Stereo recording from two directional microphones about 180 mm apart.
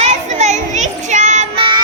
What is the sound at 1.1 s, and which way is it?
Child singing, 40° right (ahead or behind).